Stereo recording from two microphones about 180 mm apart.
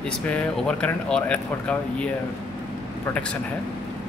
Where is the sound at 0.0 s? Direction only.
5° left (ahead or behind).